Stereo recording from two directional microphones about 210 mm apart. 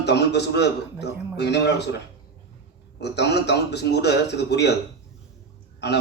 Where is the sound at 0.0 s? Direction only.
50° left (ahead or behind).